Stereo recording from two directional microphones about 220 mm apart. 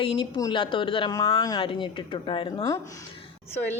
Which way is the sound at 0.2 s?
20° left (ahead or behind).